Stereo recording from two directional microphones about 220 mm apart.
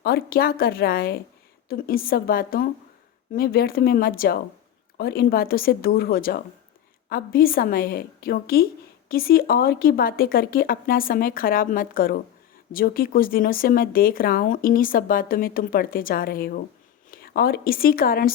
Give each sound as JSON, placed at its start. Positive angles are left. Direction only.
{"t": 0.0, "sound": "speech", "side_deg": 45}